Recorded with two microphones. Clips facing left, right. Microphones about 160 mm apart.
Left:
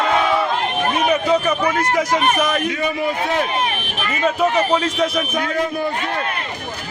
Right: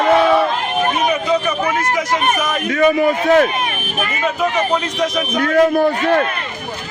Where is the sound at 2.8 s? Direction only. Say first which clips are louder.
Right 7 dB; 60° right (ahead or behind).